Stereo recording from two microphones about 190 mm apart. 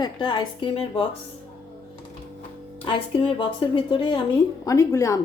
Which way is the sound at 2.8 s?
25° left (ahead or behind).